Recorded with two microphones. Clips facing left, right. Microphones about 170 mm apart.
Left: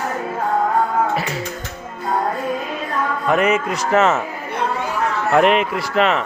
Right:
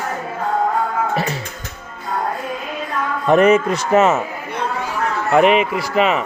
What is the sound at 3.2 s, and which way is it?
Speech, 40° right (ahead or behind).